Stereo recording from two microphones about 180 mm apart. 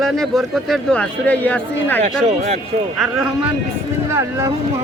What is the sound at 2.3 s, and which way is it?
Speech, 40° right (ahead or behind).